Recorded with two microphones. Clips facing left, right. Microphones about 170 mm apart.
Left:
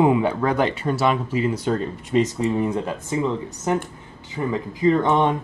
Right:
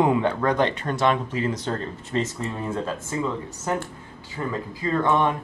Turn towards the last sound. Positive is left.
turn(degrees=20)  # may be behind; listen again after turning